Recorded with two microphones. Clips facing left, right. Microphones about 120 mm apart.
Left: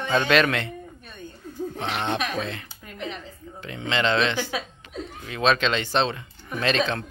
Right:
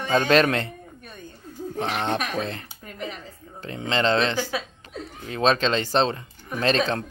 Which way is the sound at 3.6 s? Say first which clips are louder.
Right 2 dB; 35° right (ahead or behind).